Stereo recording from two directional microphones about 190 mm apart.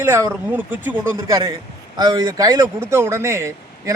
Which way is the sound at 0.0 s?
15° right (ahead or behind).